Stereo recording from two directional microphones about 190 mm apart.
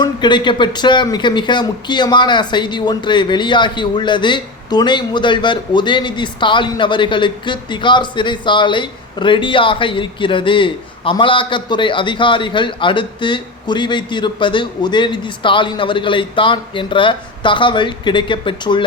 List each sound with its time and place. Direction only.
0.0 s speech: 25° left (ahead or behind)